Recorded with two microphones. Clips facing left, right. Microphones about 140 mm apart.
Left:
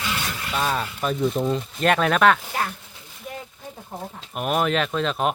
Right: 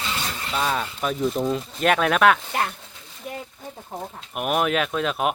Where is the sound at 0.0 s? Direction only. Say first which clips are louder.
Left 1 dB; 30° right (ahead or behind).